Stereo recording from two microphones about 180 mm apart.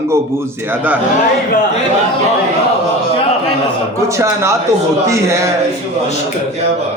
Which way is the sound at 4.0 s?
15° right (ahead or behind).